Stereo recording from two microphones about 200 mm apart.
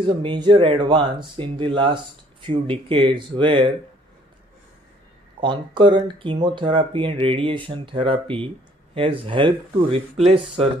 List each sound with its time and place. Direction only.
0.0 s speech: 25° right (ahead or behind)
5.4 s speech: 25° right (ahead or behind)